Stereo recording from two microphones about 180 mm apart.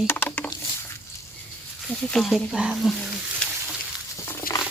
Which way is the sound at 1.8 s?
Centre (ahead or behind).